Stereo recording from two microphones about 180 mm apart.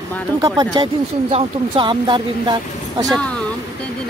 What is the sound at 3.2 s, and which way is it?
Speech, 5° left (ahead or behind).